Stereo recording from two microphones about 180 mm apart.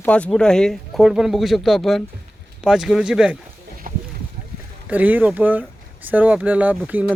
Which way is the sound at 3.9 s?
55° right (ahead or behind).